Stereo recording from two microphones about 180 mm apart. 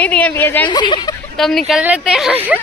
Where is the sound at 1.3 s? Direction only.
Centre (ahead or behind).